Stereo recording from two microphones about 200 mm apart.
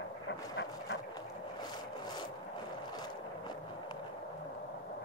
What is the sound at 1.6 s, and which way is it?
Rub, 20° left (ahead or behind).